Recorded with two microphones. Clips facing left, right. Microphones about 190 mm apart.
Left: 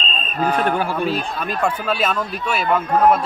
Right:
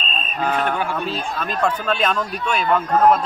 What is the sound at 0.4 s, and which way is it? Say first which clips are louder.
A man's voice: left 3 dB; 5° left (ahead or behind).